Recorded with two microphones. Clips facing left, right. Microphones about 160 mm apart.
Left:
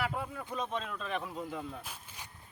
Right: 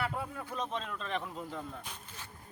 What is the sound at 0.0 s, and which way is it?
Speech, centre (ahead or behind).